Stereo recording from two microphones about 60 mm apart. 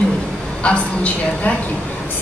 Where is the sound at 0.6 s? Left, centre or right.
Left.